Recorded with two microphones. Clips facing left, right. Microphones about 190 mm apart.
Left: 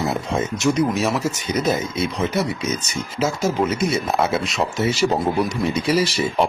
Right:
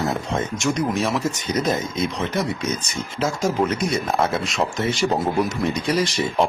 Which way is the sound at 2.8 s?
5° left (ahead or behind).